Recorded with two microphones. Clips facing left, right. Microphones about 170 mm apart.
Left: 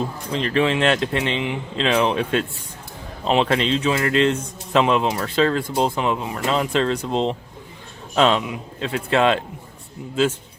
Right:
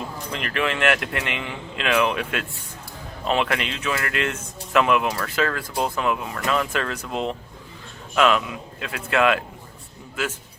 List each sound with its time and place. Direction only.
0.3 s speech: 30° left (ahead or behind)